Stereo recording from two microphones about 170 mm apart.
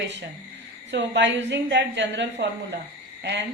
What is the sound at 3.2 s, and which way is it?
Cricket, 90° right.